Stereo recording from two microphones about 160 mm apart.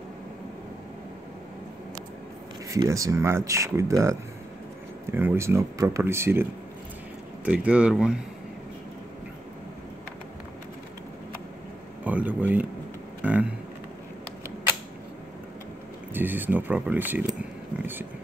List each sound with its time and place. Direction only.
2.7 s speech: 20° right (ahead or behind)
7.4 s speech: 10° right (ahead or behind)
12.0 s speech: 10° right (ahead or behind)
16.1 s speech: 10° right (ahead or behind)
17.7 s a sound: 10° right (ahead or behind)